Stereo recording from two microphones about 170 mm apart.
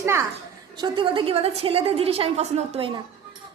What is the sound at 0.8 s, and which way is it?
A woman's voice, 30° right (ahead or behind).